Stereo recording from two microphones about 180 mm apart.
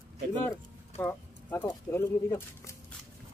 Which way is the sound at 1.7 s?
15° left (ahead or behind).